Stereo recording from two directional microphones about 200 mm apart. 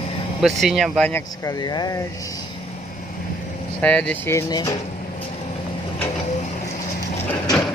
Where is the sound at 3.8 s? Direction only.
5° left (ahead or behind).